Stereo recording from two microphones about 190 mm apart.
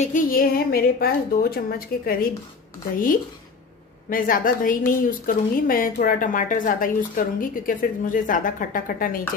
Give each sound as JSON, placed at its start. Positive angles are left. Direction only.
{"t": 0.0, "sound": "a woman's voice", "side_deg": 45}
{"t": 4.1, "sound": "a woman's voice", "side_deg": 45}